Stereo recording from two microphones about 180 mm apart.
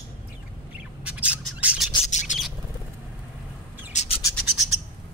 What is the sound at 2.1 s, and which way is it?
Bird, 40° left (ahead or behind).